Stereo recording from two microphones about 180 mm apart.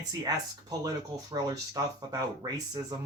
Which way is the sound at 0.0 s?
20° right (ahead or behind).